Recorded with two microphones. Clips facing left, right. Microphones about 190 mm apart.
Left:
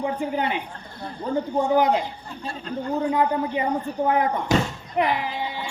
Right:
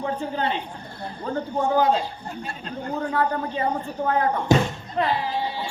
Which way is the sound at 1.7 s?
20° left (ahead or behind).